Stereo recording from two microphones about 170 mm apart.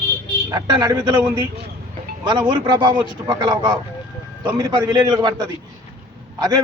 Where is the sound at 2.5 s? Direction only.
25° right (ahead or behind).